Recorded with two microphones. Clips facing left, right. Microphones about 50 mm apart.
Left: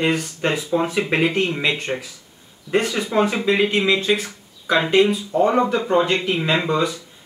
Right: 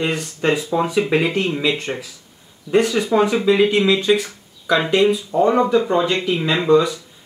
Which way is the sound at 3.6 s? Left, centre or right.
Centre.